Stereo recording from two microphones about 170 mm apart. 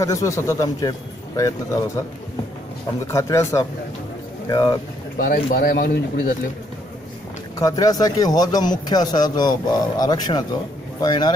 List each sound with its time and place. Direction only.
0.0 s speech: 20° left (ahead or behind)
3.1 s speech: 15° left (ahead or behind)
5.1 s speech: 55° left (ahead or behind)
7.5 s speech: 20° left (ahead or behind)